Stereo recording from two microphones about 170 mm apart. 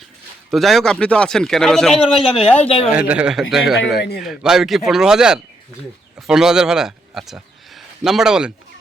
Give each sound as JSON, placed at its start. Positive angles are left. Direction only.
{"t": 0.5, "sound": "speech", "side_deg": 0}
{"t": 2.3, "sound": "speech", "side_deg": 35}
{"t": 2.9, "sound": "speech", "side_deg": -5}